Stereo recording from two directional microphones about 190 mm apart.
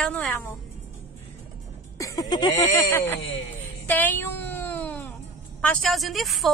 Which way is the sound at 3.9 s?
10° left (ahead or behind).